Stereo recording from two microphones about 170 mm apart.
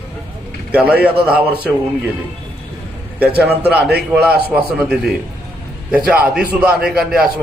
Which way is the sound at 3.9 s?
65° right (ahead or behind).